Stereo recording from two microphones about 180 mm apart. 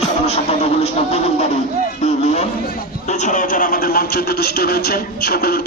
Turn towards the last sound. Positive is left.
turn(degrees=55)  # may be behind; listen again after turning